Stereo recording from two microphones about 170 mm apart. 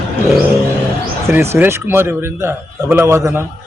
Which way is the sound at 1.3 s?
15° right (ahead or behind).